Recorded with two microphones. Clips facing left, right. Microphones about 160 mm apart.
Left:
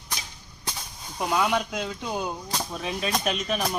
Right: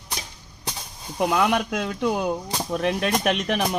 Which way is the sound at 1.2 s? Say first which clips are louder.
Right 4 dB; 60° right (ahead or behind).